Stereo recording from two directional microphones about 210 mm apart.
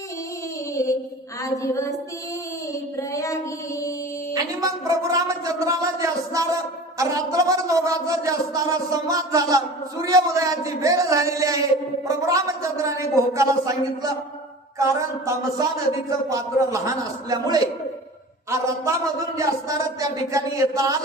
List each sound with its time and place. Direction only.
1.4 s a woman's voice: 15° left (ahead or behind)
3.1 s child singing: 15° left (ahead or behind)
4.4 s speech: 15° right (ahead or behind)
15.5 s speech: 15° right (ahead or behind)